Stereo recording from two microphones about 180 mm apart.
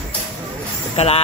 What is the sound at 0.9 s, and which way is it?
Speech, 35° left (ahead or behind).